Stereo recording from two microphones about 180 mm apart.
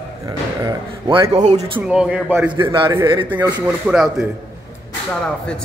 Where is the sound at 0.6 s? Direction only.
20° right (ahead or behind).